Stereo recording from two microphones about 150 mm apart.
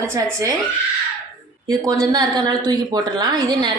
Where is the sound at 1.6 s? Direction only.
20° right (ahead or behind).